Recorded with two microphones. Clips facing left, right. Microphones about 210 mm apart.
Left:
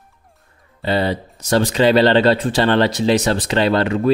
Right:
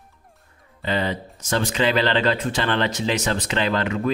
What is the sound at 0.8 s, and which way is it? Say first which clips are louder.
Speech: left 5 dB; 35° left (ahead or behind).